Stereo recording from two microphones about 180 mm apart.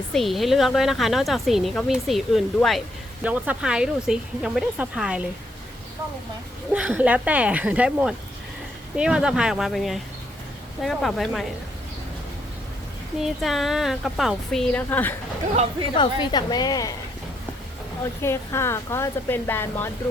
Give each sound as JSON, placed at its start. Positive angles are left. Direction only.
{"t": 0.1, "sound": "speech", "side_deg": 0}
{"t": 6.7, "sound": "speech", "side_deg": -5}
{"t": 13.1, "sound": "speech", "side_deg": 0}
{"t": 16.0, "sound": "a woman's voice", "side_deg": 25}
{"t": 18.2, "sound": "a woman's voice", "side_deg": 15}